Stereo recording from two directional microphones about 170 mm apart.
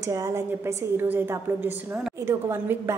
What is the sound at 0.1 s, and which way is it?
A woman's voice, 20° right (ahead or behind).